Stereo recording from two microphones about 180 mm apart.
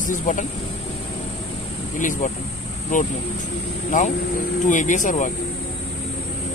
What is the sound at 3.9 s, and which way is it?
Speech, 45° left (ahead or behind).